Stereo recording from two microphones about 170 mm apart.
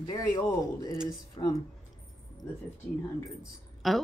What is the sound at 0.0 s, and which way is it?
Speech, 20° left (ahead or behind).